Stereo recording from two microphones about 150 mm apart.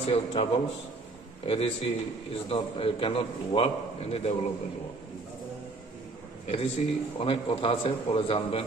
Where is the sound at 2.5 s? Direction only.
40° left (ahead or behind).